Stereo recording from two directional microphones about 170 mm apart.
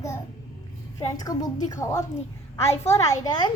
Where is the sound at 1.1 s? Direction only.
20° left (ahead or behind).